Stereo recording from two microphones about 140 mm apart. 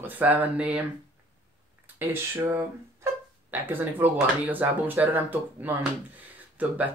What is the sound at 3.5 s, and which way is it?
Speech, 15° right (ahead or behind).